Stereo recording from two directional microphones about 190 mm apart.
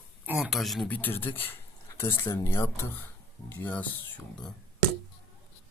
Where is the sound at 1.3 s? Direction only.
10° left (ahead or behind).